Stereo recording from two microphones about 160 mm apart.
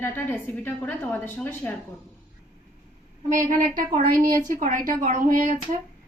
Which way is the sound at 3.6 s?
50° right (ahead or behind).